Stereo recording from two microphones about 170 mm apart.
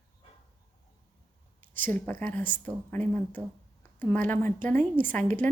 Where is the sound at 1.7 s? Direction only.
10° left (ahead or behind).